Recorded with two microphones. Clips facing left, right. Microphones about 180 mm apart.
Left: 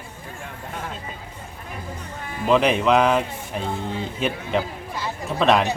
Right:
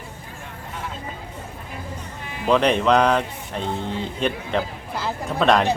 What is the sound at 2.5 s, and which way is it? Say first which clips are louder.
Speech: even; 5° left (ahead or behind).